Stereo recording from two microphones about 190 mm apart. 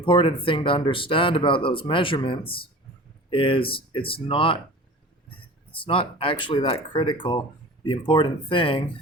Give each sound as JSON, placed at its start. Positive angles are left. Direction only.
{"t": 0.0, "sound": "speech", "side_deg": 25}
{"t": 5.8, "sound": "speech", "side_deg": 30}